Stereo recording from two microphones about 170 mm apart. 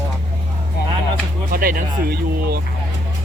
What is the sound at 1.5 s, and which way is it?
Speech, 55° right (ahead or behind).